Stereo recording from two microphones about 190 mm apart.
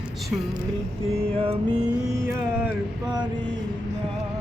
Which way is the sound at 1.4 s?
30° right (ahead or behind).